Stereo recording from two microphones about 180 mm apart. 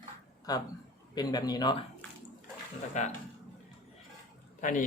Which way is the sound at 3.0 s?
40° left (ahead or behind).